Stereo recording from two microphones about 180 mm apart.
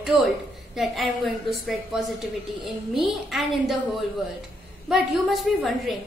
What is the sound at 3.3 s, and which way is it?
Speech, centre (ahead or behind).